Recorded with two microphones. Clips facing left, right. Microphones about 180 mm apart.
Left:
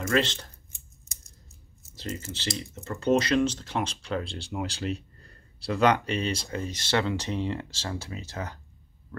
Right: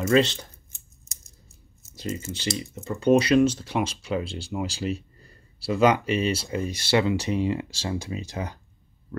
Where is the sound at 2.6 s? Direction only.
10° right (ahead or behind).